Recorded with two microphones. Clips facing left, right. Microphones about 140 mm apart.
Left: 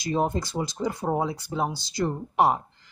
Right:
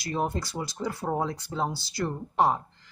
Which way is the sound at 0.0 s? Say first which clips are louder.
Left 4 dB; 20° left (ahead or behind).